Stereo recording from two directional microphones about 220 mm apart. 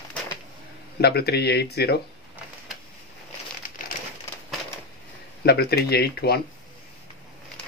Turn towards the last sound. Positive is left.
turn(degrees=45)  # may be behind; listen again after turning